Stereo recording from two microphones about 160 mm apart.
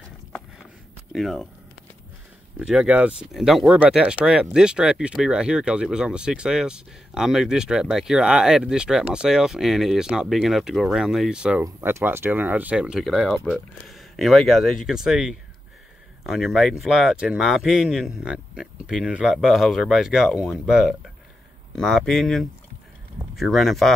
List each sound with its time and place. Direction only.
1.1 s speech: centre (ahead or behind)
2.6 s speech: 5° right (ahead or behind)